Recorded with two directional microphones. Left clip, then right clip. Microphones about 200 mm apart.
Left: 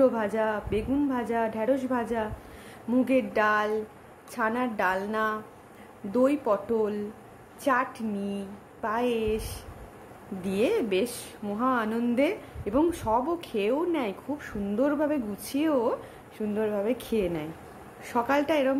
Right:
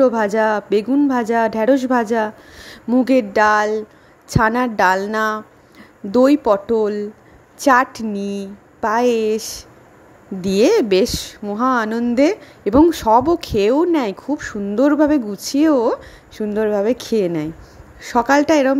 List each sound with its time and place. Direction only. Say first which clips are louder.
0.0 s a woman's voice: right 9 dB; 40° right (ahead or behind)